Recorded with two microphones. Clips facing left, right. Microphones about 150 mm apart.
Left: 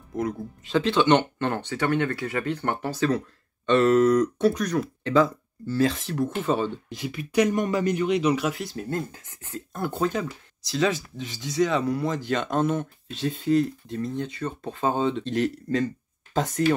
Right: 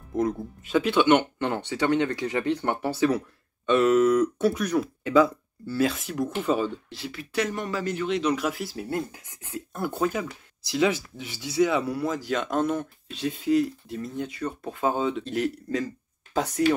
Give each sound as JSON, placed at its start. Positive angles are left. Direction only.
{"t": 0.7, "sound": "speech", "side_deg": -10}
{"t": 6.9, "sound": "speech", "side_deg": 15}